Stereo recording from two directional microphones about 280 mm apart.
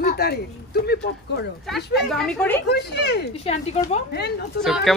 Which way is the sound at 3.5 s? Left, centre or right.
Left.